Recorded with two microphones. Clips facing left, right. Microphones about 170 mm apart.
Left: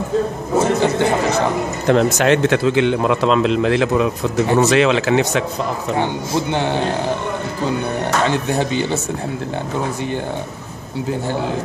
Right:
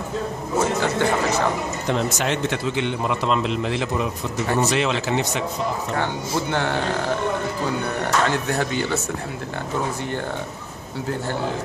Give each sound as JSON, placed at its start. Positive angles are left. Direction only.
{"t": 0.6, "sound": "speech", "side_deg": 20}
{"t": 1.9, "sound": "a man's voice", "side_deg": 75}
{"t": 6.5, "sound": "speech", "side_deg": 20}
{"t": 8.3, "sound": "speech", "side_deg": 20}